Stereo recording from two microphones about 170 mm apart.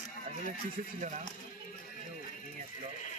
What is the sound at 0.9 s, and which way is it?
Speech, 50° right (ahead or behind).